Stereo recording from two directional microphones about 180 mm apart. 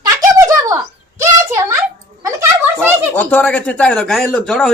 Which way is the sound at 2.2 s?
15° right (ahead or behind).